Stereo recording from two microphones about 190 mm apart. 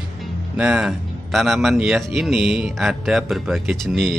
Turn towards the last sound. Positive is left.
turn(degrees=0)  # may be behind; listen again after turning